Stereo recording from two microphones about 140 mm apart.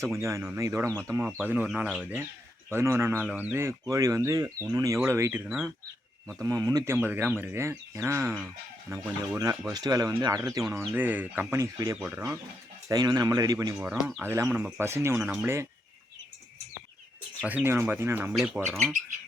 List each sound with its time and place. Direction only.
0.2 s speech: 20° right (ahead or behind)
2.6 s speech: 20° right (ahead or behind)
6.4 s speech: 25° right (ahead or behind)
13.7 s speech: 10° right (ahead or behind)
17.4 s speech: 10° right (ahead or behind)